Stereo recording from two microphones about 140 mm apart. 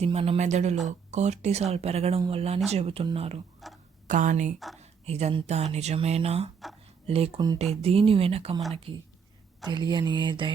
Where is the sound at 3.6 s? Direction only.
Centre (ahead or behind).